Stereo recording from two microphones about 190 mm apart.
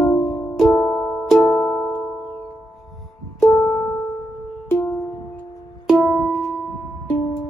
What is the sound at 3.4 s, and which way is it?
Music, 15° left (ahead or behind).